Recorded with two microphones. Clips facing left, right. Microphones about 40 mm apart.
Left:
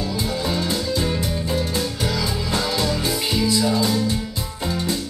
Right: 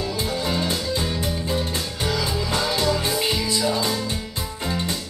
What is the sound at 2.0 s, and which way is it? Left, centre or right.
Music, right.